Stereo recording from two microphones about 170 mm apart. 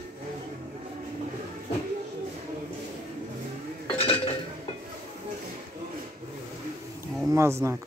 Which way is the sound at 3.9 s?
35° left (ahead or behind).